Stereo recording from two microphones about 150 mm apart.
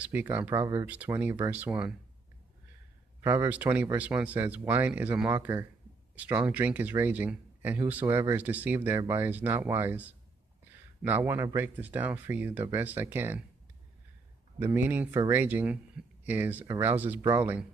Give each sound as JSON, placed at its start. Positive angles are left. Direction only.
{"t": 0.0, "sound": "speech", "side_deg": -10}
{"t": 0.8, "sound": "speech", "side_deg": -10}
{"t": 3.3, "sound": "speech", "side_deg": -10}
{"t": 14.6, "sound": "speech", "side_deg": -15}